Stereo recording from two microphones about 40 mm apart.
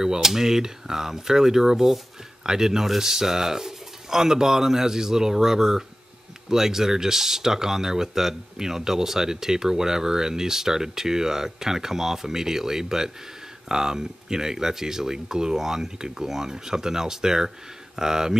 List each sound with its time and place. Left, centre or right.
0.0 s speech: centre